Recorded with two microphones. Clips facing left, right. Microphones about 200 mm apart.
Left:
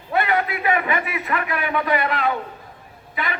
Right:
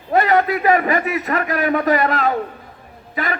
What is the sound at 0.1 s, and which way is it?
A man's voice, 40° right (ahead or behind).